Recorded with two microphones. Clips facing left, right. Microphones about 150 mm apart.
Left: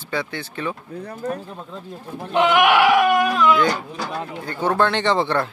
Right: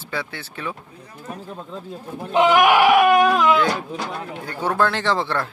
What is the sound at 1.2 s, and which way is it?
Speech, 70° left (ahead or behind).